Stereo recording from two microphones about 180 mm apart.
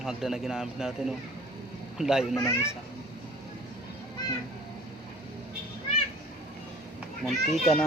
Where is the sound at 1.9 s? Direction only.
5° right (ahead or behind).